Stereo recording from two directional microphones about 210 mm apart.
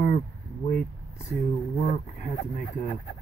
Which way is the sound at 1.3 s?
Centre (ahead or behind).